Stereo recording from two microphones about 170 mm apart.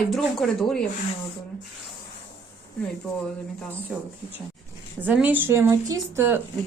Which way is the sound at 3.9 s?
5° right (ahead or behind).